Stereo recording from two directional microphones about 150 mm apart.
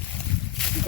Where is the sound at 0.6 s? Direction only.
5° left (ahead or behind).